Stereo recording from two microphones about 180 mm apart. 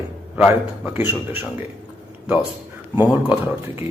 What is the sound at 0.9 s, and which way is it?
Speech, 10° right (ahead or behind).